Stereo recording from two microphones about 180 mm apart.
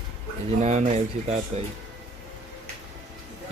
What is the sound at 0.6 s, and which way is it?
Speech, 40° right (ahead or behind).